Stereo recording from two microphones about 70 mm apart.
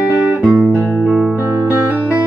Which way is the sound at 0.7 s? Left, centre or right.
Centre.